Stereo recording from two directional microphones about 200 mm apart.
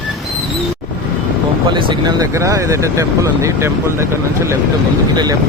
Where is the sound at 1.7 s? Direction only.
20° right (ahead or behind).